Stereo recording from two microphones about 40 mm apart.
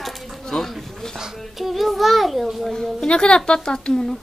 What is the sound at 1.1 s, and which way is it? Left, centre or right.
A child's voice, centre.